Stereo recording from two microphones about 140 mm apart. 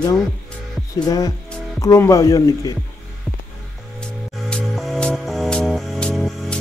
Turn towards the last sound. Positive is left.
turn(degrees=5)  # may be behind; listen again after turning